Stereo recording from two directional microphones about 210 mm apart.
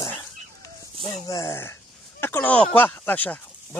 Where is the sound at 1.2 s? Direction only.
15° left (ahead or behind).